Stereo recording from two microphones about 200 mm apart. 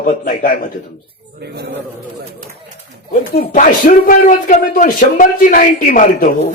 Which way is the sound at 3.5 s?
40° left (ahead or behind).